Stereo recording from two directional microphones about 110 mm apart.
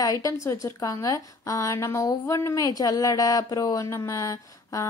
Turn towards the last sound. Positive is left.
turn(degrees=30)  # may be behind; listen again after turning